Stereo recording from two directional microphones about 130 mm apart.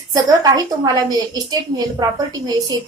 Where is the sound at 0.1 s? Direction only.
25° right (ahead or behind).